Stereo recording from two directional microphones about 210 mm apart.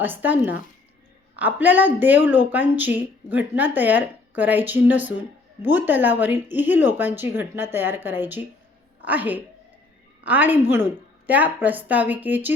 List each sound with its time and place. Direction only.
0.0 s a woman's voice: 10° right (ahead or behind)